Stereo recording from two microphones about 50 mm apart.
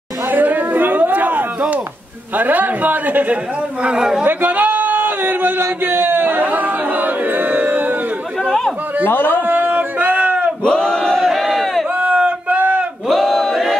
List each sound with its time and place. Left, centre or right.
0.3 s chatter: right
2.3 s a man's voice: right
3.8 s a man's voice: centre
4.2 s a sound: right
8.5 s chatter: centre
9.0 s a man's voice: left
9.5 s a sound: right
10.6 s battle cry: centre
11.1 s battle cry: centre
12.0 s a sound: right
13.1 s battle cry: centre